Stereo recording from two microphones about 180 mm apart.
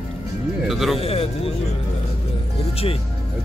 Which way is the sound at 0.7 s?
Centre (ahead or behind).